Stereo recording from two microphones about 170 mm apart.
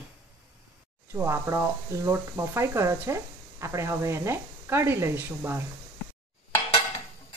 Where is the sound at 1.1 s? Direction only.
15° right (ahead or behind).